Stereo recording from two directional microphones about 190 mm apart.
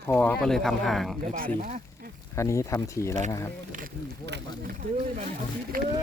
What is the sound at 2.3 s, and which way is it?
Speech, 15° left (ahead or behind).